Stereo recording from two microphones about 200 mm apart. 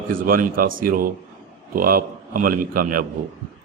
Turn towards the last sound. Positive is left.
turn(degrees=-45)  # may be behind; listen again after turning